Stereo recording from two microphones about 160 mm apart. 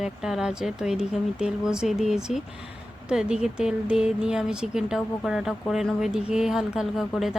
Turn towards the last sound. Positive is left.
turn(degrees=0)  # may be behind; listen again after turning